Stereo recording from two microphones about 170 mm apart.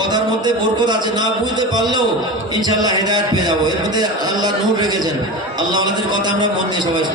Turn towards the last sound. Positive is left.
turn(degrees=-25)  # may be behind; listen again after turning